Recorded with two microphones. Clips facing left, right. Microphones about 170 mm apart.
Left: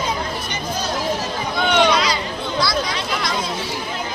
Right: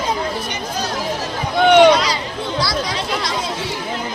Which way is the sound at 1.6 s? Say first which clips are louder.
Right 8 dB; 55° right (ahead or behind).